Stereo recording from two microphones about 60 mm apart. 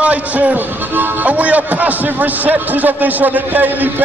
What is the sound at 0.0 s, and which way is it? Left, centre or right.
A man's voice, right.